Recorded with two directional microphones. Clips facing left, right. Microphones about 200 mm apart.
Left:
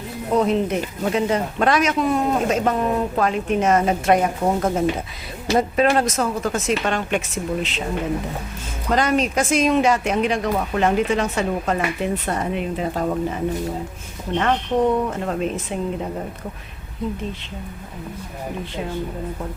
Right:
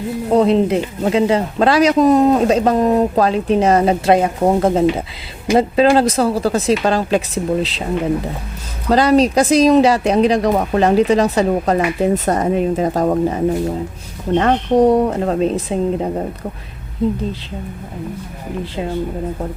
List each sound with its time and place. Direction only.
0.3 s speech: 30° right (ahead or behind)
8.9 s speech: 35° right (ahead or behind)